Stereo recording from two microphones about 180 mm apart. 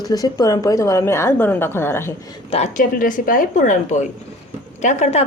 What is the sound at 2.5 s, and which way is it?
A woman's voice, 40° left (ahead or behind).